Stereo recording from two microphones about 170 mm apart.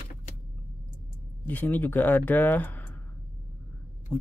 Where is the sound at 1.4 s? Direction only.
10° left (ahead or behind).